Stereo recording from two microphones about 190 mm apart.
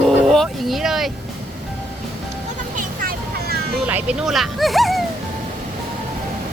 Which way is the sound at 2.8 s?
50° right (ahead or behind).